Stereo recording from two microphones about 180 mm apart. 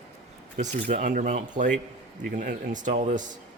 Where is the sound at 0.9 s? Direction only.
45° right (ahead or behind).